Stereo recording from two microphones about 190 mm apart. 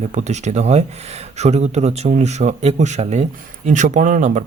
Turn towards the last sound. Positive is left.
turn(degrees=-40)  # may be behind; listen again after turning